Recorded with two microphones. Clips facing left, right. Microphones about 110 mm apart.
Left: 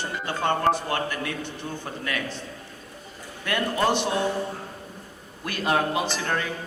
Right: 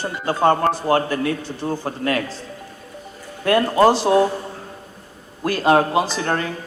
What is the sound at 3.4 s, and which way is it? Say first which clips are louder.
Speech: right 9 dB; 35° right (ahead or behind).